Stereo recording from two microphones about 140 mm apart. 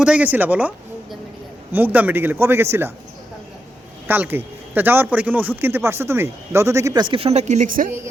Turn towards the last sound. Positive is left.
turn(degrees=-80)